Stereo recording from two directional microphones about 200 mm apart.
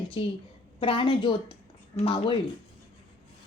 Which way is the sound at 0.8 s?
25° left (ahead or behind).